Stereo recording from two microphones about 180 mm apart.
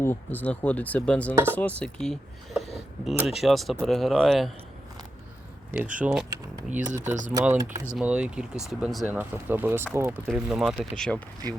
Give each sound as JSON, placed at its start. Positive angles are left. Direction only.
{"t": 0.0, "sound": "speech", "side_deg": 10}
{"t": 5.7, "sound": "speech", "side_deg": -10}
{"t": 7.0, "sound": "speech", "side_deg": -40}
{"t": 7.3, "sound": "speech", "side_deg": -10}
{"t": 10.2, "sound": "speech", "side_deg": 0}